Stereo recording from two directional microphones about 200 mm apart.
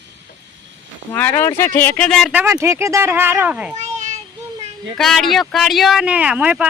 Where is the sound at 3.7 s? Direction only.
35° right (ahead or behind).